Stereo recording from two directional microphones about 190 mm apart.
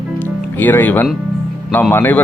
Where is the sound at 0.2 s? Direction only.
10° left (ahead or behind).